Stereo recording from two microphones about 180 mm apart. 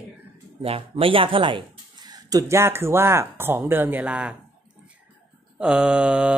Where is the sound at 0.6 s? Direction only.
30° right (ahead or behind); by 4.4 s 5° right (ahead or behind).